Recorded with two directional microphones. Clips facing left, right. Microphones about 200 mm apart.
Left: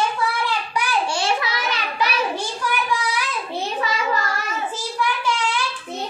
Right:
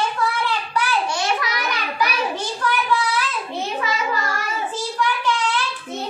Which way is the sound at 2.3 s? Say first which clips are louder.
Right 1 dB; 10° left (ahead or behind).